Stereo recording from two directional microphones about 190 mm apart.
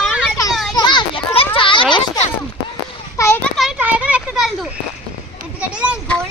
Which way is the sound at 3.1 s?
10° left (ahead or behind).